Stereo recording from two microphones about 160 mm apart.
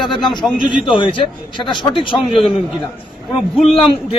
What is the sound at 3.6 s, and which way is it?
Speech, 35° left (ahead or behind).